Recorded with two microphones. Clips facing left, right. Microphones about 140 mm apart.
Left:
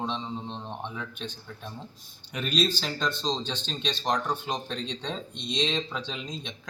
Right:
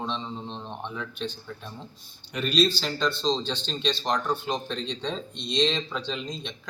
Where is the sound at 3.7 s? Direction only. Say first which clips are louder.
Right 2 dB; 5° left (ahead or behind).